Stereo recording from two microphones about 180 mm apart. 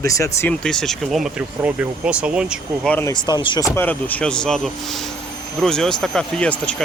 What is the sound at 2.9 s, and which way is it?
Speech, 15° left (ahead or behind).